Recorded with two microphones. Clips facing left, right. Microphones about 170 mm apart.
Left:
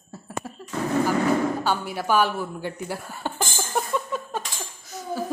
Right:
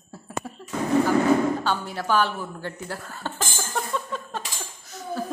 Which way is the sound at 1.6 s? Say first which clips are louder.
Left 1 dB; 10° left (ahead or behind).